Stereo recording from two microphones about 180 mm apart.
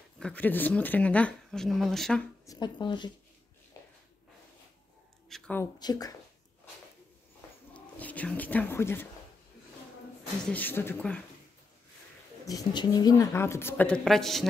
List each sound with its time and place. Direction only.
0.2 s speech: 10° left (ahead or behind)
2.4 s speech: 20° left (ahead or behind)
3.8 s a sound: 20° left (ahead or behind)
5.3 s speech: 10° left (ahead or behind)
5.8 s speech: 20° left (ahead or behind)
7.7 s speech: 10° left (ahead or behind)
10.4 s speech: 10° left (ahead or behind)
12.4 s speech: 20° left (ahead or behind); by 14.5 s centre (ahead or behind)